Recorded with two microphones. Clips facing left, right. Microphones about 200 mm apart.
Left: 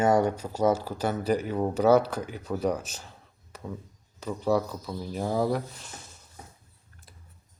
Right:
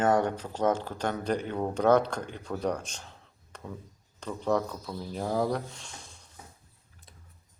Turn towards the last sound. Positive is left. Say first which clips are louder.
# left 2 dB
turn(degrees=5)  # may be behind; listen again after turning